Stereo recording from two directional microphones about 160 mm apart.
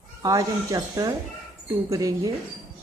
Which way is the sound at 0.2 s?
20° right (ahead or behind).